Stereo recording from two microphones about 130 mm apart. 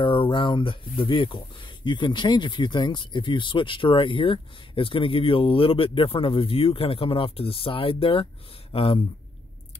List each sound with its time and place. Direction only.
0.0 s speech: 40° left (ahead or behind)